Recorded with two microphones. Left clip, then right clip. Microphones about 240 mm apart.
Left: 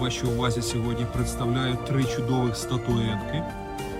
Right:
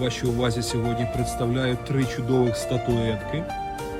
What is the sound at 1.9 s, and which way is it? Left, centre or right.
Speech, centre.